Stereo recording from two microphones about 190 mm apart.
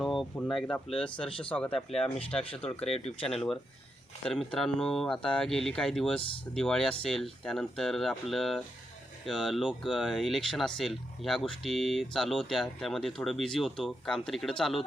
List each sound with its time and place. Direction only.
0.0 s a sound: centre (ahead or behind)
0.7 s speech: 5° left (ahead or behind)
1.9 s speech: 30° left (ahead or behind)
2.5 s speech: 5° left (ahead or behind)
2.8 s speech: 30° left (ahead or behind)
3.3 s speech: centre (ahead or behind)